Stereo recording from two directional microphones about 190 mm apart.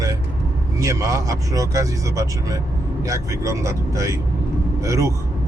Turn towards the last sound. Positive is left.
turn(degrees=-15)  # may be behind; listen again after turning